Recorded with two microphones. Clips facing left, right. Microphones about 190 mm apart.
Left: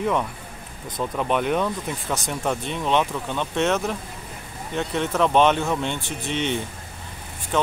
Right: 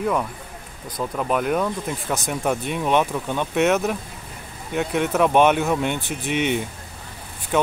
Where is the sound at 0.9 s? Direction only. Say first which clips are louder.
Even; 5° right (ahead or behind).